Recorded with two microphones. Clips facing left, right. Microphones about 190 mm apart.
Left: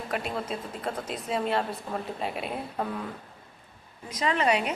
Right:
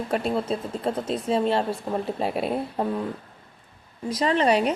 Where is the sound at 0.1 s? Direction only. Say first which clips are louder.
Right 6 dB; 30° right (ahead or behind).